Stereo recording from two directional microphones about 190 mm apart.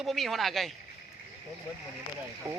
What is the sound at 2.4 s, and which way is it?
Speech, 15° right (ahead or behind).